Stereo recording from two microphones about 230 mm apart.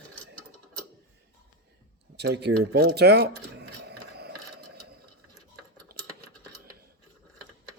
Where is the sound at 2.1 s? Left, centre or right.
Right.